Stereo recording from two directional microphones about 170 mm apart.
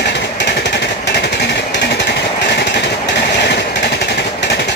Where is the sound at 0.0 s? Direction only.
85° left.